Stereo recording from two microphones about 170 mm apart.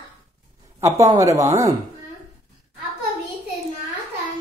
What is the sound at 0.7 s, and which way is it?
Speech, 20° right (ahead or behind).